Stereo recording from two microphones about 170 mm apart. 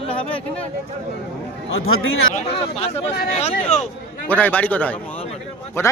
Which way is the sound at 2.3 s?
35° left (ahead or behind).